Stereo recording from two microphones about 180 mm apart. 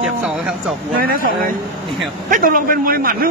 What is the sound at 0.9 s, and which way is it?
A man's voice, 50° right (ahead or behind).